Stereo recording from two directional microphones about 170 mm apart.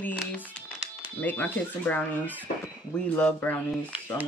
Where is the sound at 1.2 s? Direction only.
10° left (ahead or behind).